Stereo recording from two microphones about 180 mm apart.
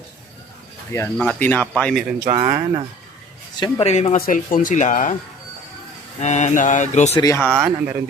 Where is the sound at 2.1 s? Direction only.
15° right (ahead or behind).